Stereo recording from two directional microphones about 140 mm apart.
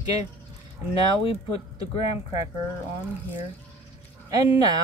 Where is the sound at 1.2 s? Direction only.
40° left (ahead or behind).